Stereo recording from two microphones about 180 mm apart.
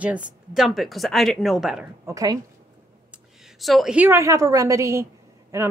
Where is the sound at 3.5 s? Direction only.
Centre (ahead or behind).